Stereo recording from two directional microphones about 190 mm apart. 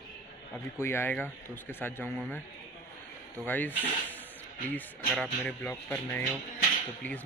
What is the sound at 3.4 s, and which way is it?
Speech, 10° left (ahead or behind).